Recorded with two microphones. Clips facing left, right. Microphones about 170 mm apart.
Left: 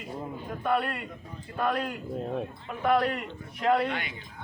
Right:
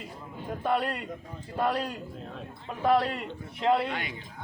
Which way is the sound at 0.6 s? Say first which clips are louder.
Even; 30° right (ahead or behind).